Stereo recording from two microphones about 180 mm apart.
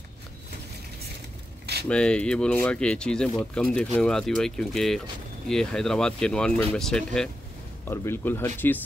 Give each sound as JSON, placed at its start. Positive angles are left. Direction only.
{"t": 1.9, "sound": "speech", "side_deg": 5}